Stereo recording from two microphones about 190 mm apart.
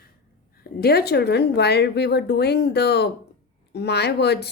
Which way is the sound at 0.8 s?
55° left (ahead or behind).